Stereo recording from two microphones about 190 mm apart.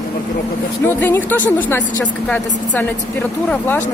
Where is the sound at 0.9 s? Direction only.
10° left (ahead or behind).